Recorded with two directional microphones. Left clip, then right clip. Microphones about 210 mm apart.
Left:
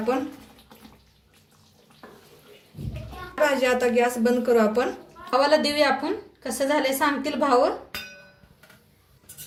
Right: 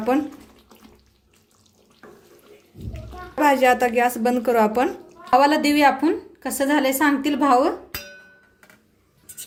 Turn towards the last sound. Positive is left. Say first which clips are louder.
# right 3 dB
turn(degrees=-50)  # may be behind; listen again after turning